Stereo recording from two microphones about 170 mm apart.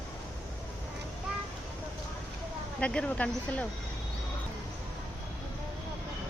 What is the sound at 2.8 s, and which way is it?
Speech, 5° left (ahead or behind).